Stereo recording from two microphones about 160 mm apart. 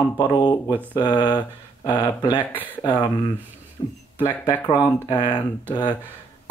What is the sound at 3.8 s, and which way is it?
Speech, 30° left (ahead or behind).